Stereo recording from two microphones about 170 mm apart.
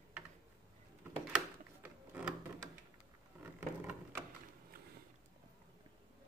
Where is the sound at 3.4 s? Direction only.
15° right (ahead or behind).